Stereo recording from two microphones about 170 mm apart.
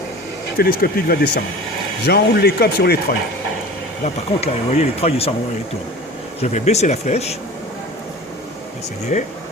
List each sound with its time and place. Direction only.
0.5 s speech: 60° left (ahead or behind)
4.0 s speech: 40° left (ahead or behind)
6.4 s speech: 40° left (ahead or behind)
9.1 s speech: 45° left (ahead or behind)